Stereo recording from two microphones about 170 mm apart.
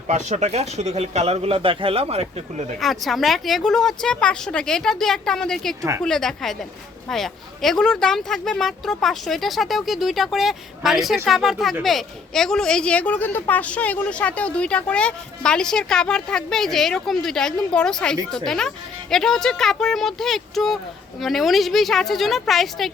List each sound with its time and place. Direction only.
0.1 s speech: 45° right (ahead or behind)
2.8 s speech: centre (ahead or behind)